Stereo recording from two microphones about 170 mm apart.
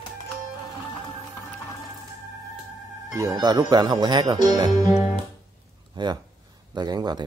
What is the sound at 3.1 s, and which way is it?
Speech, 25° right (ahead or behind).